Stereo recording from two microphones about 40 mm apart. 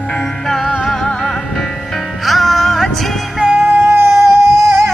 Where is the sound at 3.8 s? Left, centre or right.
Right.